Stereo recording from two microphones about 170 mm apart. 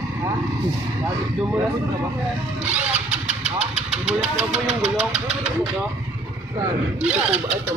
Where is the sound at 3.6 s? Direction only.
40° right (ahead or behind).